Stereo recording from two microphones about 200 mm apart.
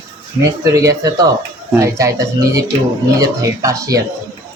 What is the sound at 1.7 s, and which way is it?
A man's voice, 15° right (ahead or behind).